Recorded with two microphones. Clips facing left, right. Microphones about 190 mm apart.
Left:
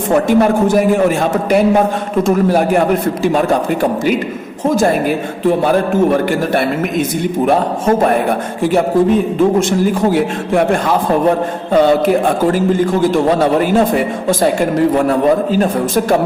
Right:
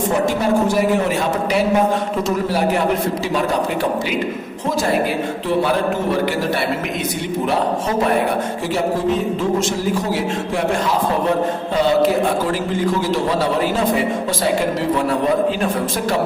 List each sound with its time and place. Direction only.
0.3 s a man's voice: 55° left (ahead or behind)
5.5 s a man's voice: 50° left (ahead or behind)
10.1 s a man's voice: 55° left (ahead or behind)